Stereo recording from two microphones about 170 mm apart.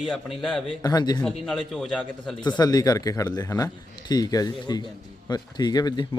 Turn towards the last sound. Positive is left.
turn(degrees=25)  # may be behind; listen again after turning